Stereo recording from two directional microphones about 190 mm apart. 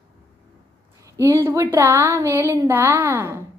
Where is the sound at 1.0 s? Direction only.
15° right (ahead or behind).